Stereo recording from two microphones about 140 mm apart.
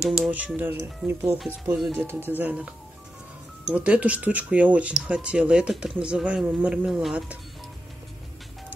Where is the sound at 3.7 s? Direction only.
10° right (ahead or behind).